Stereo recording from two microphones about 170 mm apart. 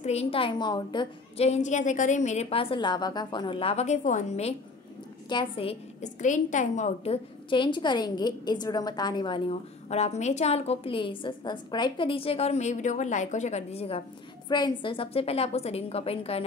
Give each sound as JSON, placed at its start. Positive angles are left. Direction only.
{"t": 0.0, "sound": "a woman's voice", "side_deg": 40}
{"t": 7.4, "sound": "a woman's voice", "side_deg": 30}